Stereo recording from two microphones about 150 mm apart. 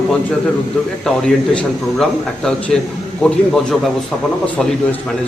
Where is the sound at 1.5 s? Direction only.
5° left (ahead or behind).